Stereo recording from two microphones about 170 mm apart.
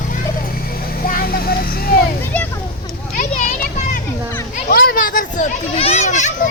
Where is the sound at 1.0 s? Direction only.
60° left (ahead or behind).